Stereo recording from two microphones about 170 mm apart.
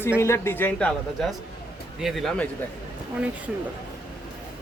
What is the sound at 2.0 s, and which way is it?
Speech, centre (ahead or behind).